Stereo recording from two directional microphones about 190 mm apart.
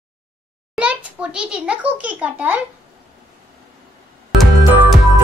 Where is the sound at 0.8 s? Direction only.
5° right (ahead or behind).